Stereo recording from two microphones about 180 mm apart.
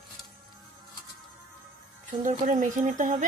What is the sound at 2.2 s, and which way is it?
Speech, 45° right (ahead or behind).